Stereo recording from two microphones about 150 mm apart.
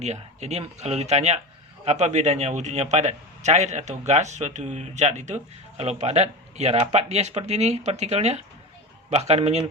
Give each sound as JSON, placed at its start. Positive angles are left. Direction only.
{"t": 0.0, "sound": "a man's voice", "side_deg": -50}